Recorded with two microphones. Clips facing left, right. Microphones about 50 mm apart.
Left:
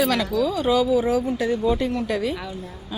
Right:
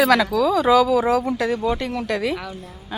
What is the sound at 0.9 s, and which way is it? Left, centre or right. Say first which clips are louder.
A woman's voice: right 2 dB; right.